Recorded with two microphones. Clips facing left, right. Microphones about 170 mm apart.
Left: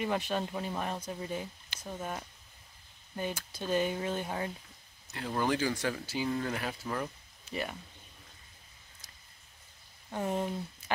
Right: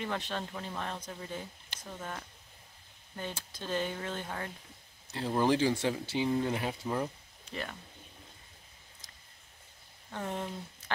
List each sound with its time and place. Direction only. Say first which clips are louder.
0.0 s speech: left 4 dB; 10° left (ahead or behind)
3.5 s speech: left 4 dB; 10° left (ahead or behind)
5.1 s speech: right 3 dB; 25° right (ahead or behind)
7.4 s speech: left 3 dB; 10° left (ahead or behind)
10.1 s speech: left 4 dB; 10° left (ahead or behind)